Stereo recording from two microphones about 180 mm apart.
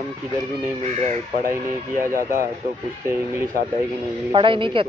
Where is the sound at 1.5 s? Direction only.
15° right (ahead or behind).